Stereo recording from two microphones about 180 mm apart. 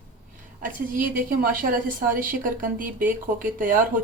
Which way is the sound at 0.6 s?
50° right (ahead or behind).